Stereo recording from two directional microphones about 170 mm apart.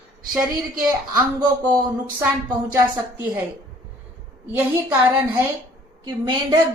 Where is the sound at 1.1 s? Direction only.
25° right (ahead or behind).